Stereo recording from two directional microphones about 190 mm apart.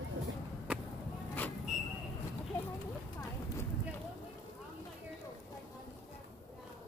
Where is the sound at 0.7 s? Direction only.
5° right (ahead or behind).